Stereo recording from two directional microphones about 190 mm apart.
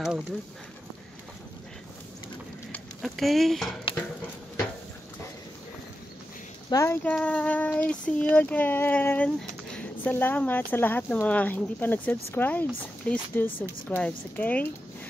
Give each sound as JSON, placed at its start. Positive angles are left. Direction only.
{"t": 2.7, "sound": "speech", "side_deg": 0}
{"t": 3.9, "sound": "a sound", "side_deg": 30}
{"t": 6.7, "sound": "child singing", "side_deg": 15}